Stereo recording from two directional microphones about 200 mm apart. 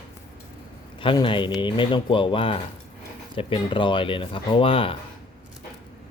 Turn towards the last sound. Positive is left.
turn(degrees=25)  # may be behind; listen again after turning